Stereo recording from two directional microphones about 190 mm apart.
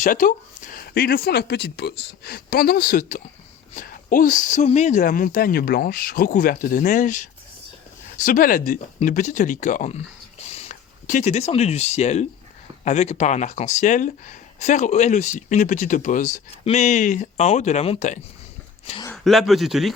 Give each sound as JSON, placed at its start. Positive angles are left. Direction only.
{"t": 0.0, "sound": "speech", "side_deg": 45}
{"t": 19.1, "sound": "speech", "side_deg": 0}